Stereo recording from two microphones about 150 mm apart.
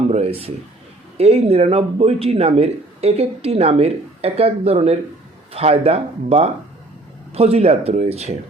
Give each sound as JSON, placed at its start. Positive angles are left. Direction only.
{"t": 0.1, "sound": "a man's voice", "side_deg": -45}